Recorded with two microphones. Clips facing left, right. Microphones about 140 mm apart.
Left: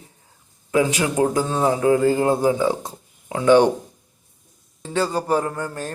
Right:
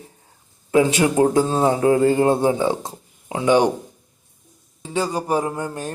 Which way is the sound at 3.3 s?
15° right (ahead or behind).